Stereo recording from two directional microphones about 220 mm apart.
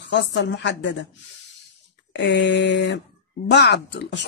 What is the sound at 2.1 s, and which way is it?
Speech, 50° left (ahead or behind).